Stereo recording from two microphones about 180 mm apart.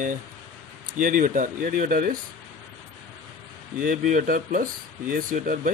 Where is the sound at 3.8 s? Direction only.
50° right (ahead or behind).